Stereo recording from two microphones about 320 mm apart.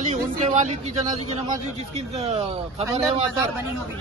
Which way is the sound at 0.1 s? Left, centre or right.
Centre.